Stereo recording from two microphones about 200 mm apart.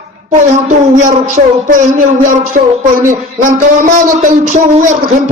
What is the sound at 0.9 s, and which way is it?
Speech, 40° right (ahead or behind).